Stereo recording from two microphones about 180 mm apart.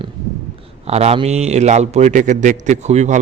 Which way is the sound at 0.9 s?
35° right (ahead or behind).